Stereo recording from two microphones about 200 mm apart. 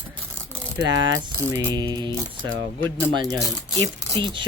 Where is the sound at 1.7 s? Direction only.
20° right (ahead or behind).